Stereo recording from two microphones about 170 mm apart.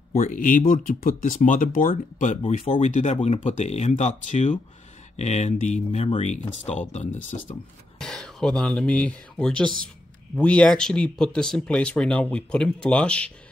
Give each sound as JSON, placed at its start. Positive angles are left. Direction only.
{"t": 0.1, "sound": "speech", "side_deg": 50}
{"t": 8.0, "sound": "speech", "side_deg": 5}